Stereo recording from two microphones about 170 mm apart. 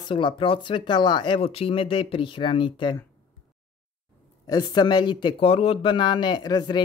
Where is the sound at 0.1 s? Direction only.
30° left (ahead or behind).